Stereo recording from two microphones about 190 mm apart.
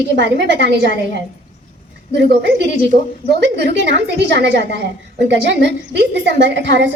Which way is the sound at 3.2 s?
60° right (ahead or behind).